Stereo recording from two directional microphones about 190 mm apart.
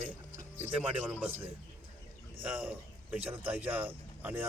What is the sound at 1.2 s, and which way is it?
Speech, 10° right (ahead or behind).